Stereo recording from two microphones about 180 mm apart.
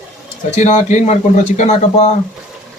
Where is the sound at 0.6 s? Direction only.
40° left (ahead or behind).